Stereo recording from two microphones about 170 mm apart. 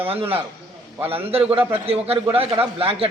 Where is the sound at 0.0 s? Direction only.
35° right (ahead or behind).